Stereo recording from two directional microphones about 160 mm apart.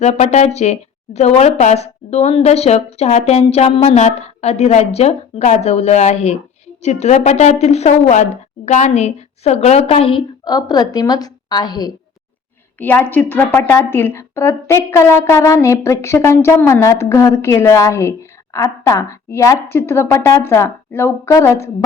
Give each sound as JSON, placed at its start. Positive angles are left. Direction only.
{"t": 0.0, "sound": "a woman's voice", "side_deg": 45}
{"t": 12.8, "sound": "a woman's voice", "side_deg": 10}